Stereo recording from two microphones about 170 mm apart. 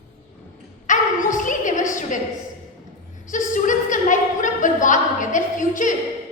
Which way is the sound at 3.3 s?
50° left (ahead or behind).